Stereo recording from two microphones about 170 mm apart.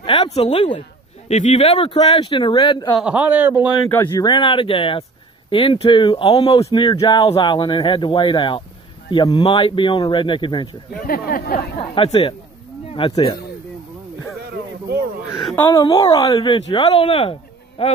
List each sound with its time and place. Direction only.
0.0 s speech: 35° left (ahead or behind)
3.0 s a man's voice: 5° right (ahead or behind)
3.9 s speech: 10° left (ahead or behind)
4.2 s speech: 30° left (ahead or behind)
11.1 s speech: 60° left (ahead or behind)
11.8 s speech: 30° left (ahead or behind)
15.3 s speech: centre (ahead or behind)
15.6 s speech: 25° left (ahead or behind)